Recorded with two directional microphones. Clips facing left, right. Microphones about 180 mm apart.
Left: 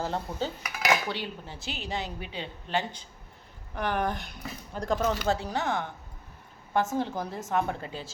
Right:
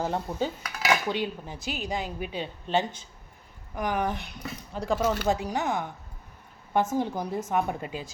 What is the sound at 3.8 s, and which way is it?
A woman's voice, 5° right (ahead or behind).